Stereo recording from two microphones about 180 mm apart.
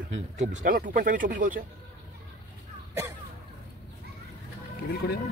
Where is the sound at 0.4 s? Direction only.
45° right (ahead or behind).